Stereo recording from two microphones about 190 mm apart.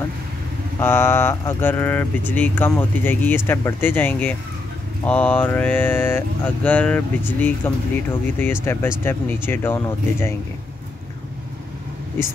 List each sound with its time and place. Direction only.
0.7 s speech: 10° left (ahead or behind)